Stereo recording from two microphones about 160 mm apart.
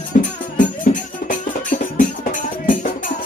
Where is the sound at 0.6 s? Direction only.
55° left (ahead or behind).